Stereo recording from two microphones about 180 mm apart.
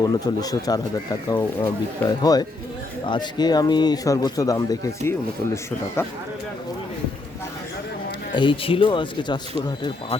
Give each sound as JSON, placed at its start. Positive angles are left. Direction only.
{"t": 0.1, "sound": "speech", "side_deg": 20}
{"t": 8.3, "sound": "speech", "side_deg": 25}